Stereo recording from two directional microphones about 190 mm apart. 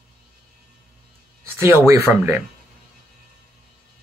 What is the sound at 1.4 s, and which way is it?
Speech, 15° right (ahead or behind).